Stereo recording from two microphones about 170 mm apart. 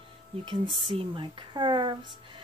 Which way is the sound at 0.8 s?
30° right (ahead or behind).